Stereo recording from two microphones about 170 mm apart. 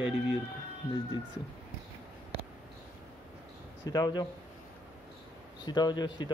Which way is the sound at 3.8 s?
25° left (ahead or behind).